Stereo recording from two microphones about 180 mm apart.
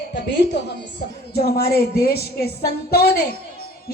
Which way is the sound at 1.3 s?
60° left (ahead or behind).